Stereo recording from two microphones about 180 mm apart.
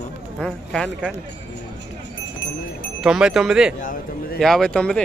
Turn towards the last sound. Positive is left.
turn(degrees=5)  # may be behind; listen again after turning